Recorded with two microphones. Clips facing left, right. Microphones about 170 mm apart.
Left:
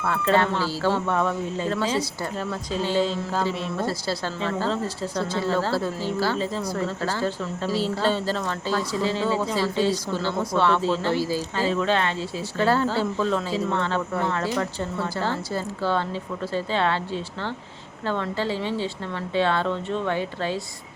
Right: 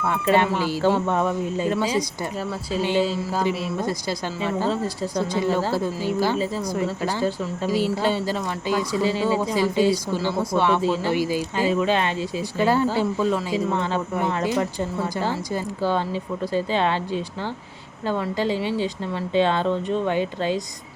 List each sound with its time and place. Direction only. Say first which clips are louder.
0.0 s speech: right 2 dB; 15° right (ahead or behind)